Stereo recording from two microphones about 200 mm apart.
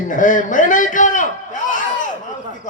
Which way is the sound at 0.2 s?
40° left (ahead or behind).